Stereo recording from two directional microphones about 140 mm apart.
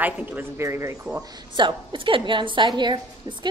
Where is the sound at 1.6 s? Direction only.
35° right (ahead or behind).